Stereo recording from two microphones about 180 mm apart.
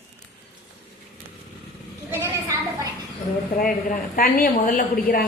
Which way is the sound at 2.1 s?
15° right (ahead or behind).